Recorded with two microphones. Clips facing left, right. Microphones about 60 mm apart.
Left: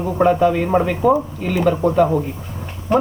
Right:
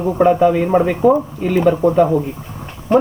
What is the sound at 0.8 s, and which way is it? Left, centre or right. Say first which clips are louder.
Speech: right 3 dB; centre.